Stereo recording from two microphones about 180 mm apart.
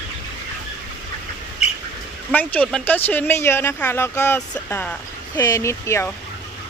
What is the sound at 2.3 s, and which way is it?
Speech, 10° left (ahead or behind).